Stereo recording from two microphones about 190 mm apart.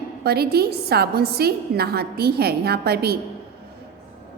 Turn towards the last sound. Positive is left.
turn(degrees=-55)  # may be behind; listen again after turning